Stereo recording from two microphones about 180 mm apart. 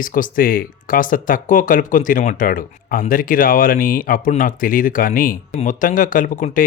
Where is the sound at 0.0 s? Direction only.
50° left (ahead or behind).